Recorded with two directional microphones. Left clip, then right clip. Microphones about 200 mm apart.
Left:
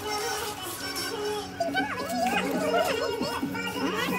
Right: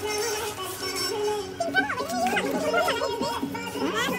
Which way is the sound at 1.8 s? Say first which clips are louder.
Right 5 dB; centre (ahead or behind).